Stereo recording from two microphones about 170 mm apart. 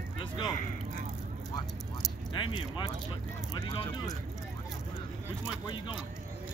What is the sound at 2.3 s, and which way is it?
Speech, 30° left (ahead or behind).